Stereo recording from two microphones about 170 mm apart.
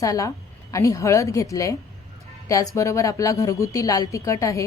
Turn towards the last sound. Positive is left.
turn(degrees=20)  # may be behind; listen again after turning